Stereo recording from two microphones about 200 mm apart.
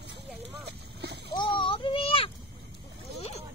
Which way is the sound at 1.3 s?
25° left (ahead or behind).